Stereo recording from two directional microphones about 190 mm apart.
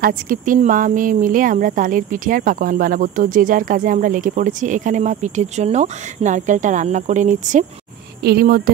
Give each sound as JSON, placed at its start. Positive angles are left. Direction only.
{"t": 0.0, "sound": "speech", "side_deg": -45}
{"t": 8.2, "sound": "speech", "side_deg": -55}